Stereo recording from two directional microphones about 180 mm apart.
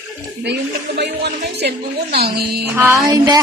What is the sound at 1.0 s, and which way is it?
Speech, 70° right (ahead or behind).